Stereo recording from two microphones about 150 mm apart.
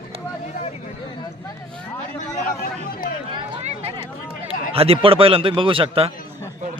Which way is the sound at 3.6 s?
45° right (ahead or behind).